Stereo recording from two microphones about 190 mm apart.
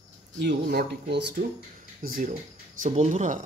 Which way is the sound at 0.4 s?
65° right (ahead or behind).